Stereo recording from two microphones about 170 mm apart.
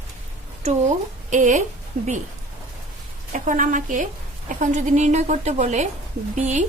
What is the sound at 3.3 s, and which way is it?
A woman's voice, 50° right (ahead or behind).